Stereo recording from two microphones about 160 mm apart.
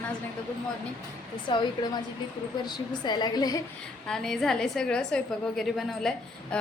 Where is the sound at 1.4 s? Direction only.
30° left (ahead or behind).